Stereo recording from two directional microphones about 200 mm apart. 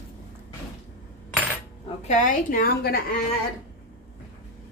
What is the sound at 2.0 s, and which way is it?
Speech, 40° left (ahead or behind).